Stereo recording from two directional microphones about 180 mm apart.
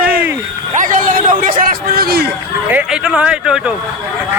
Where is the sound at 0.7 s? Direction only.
45° right (ahead or behind).